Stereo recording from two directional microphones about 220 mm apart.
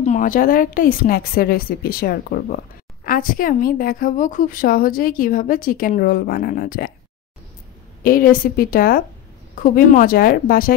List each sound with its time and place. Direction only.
0.0 s a woman's voice: 35° left (ahead or behind)
8.0 s a woman's voice: 40° left (ahead or behind)